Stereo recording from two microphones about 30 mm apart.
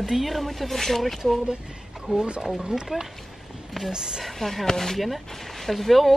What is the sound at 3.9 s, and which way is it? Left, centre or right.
Speech, right.